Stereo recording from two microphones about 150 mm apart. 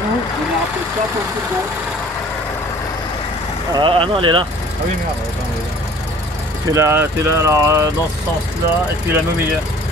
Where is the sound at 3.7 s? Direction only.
35° right (ahead or behind).